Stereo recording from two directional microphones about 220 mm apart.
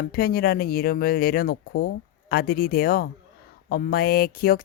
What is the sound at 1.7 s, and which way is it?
Speech, 60° left (ahead or behind).